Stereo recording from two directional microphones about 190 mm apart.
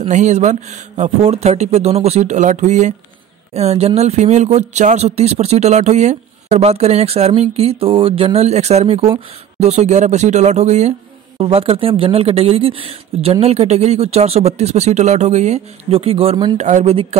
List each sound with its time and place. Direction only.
0.0 s speech: 35° right (ahead or behind)
16.5 s speech: 40° right (ahead or behind)